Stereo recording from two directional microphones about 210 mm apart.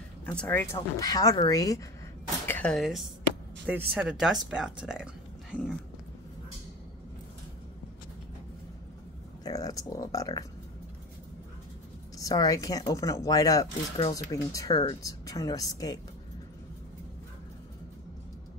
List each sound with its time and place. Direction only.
0.2 s speech: 5° left (ahead or behind)
9.4 s speech: 15° left (ahead or behind)
12.2 s speech: 15° left (ahead or behind)